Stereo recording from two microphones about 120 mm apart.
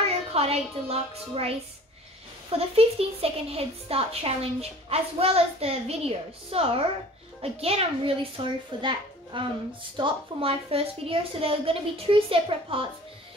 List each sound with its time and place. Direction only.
0.0 s a child's voice: 55° right (ahead or behind)
2.5 s a woman's voice: 55° right (ahead or behind)
8.7 s a child's voice: 40° right (ahead or behind)